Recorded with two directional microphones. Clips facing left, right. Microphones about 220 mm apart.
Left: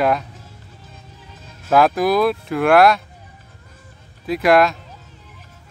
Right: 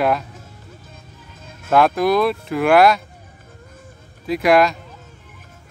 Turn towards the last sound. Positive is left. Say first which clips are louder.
# even
turn(degrees=0)  # may be behind; listen again after turning